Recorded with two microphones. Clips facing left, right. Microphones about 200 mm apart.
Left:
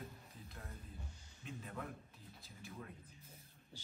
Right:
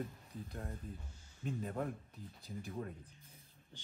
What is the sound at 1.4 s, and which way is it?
Speech, 45° right (ahead or behind).